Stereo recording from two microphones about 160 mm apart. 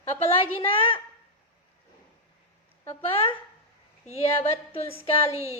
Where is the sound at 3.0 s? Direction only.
35° left (ahead or behind).